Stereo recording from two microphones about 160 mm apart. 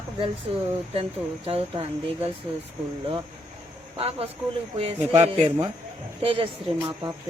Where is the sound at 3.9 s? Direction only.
40° right (ahead or behind).